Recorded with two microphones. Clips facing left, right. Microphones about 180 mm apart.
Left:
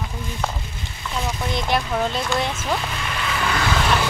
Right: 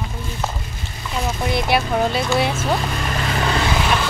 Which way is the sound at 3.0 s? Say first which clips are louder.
Right 3 dB; 40° right (ahead or behind).